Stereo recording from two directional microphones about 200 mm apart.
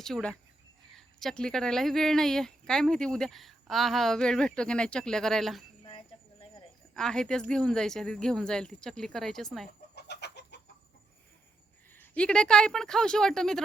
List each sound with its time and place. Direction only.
0.0 s speech: 5° left (ahead or behind)
6.9 s speech: 5° left (ahead or behind)
9.9 s chicken: 55° left (ahead or behind)
11.9 s speech: 5° left (ahead or behind)